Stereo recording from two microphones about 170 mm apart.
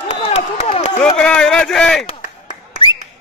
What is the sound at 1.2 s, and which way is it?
Speech, 5° left (ahead or behind).